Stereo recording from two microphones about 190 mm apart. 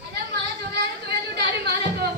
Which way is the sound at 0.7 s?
65° right (ahead or behind).